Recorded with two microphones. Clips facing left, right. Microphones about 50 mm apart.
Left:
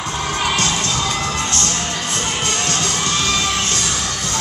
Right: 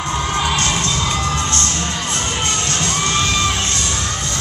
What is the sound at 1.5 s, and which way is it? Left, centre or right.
Crowd, right.